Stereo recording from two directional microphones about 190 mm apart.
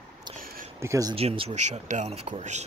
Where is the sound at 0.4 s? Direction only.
45° right (ahead or behind).